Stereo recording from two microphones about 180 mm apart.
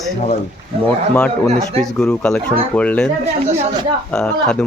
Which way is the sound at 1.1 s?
5° left (ahead or behind).